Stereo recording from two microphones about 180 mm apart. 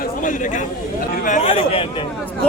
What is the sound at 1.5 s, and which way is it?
Speech, 30° left (ahead or behind).